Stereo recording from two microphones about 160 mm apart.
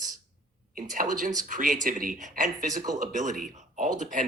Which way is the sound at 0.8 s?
60° right (ahead or behind).